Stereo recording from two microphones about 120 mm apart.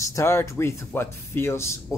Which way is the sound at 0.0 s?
25° left (ahead or behind).